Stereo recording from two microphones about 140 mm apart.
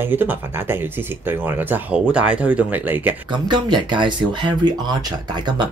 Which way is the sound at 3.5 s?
35° right (ahead or behind).